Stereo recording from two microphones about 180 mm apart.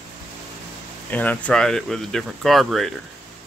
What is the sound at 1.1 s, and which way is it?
Speech, 10° left (ahead or behind).